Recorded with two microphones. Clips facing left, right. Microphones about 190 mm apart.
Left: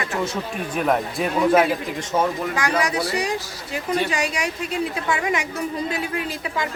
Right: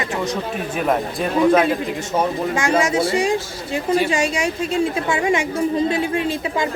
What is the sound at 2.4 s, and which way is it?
A woman's voice, 25° right (ahead or behind).